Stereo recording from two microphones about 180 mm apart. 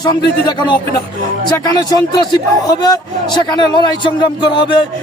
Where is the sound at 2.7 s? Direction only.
20° left (ahead or behind).